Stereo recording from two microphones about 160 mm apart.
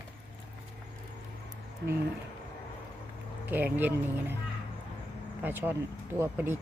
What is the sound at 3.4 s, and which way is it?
Speech, 10° right (ahead or behind).